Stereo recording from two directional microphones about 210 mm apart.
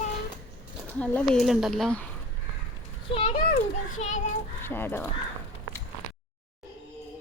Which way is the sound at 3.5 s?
35° left (ahead or behind).